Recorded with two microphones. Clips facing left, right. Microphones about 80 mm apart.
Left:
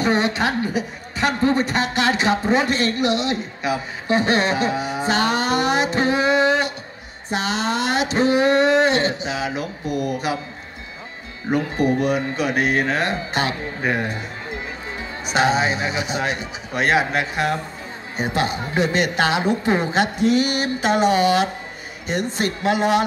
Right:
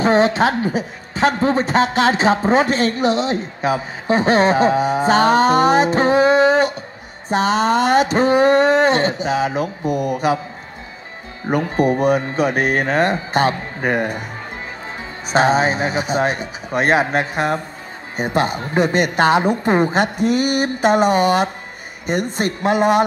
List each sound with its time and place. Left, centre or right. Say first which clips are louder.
0.0 s a woman's voice: right 5 dB; right
11.5 s a woman's voice: right 3 dB; right
15.2 s a woman's voice: right 4 dB; right